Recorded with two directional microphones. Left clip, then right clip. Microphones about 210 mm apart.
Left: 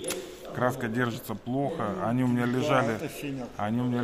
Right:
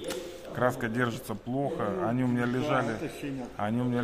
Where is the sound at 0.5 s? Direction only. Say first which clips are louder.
Even; 5° left (ahead or behind).